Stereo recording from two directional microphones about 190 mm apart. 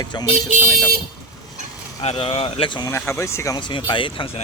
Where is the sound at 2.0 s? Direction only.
30° left (ahead or behind).